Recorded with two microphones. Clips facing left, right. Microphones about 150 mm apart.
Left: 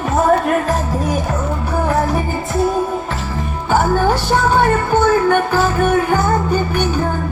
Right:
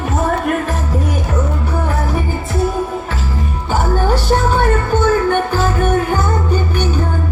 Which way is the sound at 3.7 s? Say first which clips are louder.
Left 2 dB; 45° left (ahead or behind).